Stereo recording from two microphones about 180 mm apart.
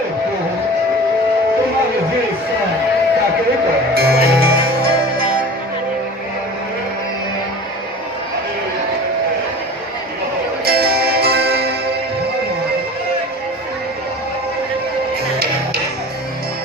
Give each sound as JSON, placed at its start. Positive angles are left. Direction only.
{"t": 3.9, "sound": "music", "side_deg": -60}
{"t": 10.7, "sound": "music", "side_deg": -60}